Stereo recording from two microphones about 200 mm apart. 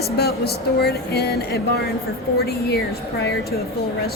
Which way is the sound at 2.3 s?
50° left (ahead or behind).